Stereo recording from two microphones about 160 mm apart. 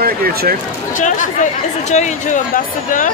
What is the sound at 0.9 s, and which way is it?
Speech, 50° left (ahead or behind).